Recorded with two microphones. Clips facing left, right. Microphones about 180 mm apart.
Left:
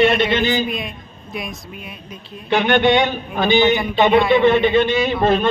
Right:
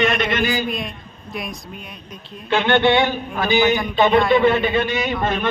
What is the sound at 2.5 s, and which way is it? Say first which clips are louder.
A man's voice: left 1 dB; 15° left (ahead or behind).